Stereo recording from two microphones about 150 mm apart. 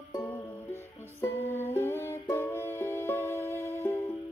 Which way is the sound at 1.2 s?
15° left (ahead or behind).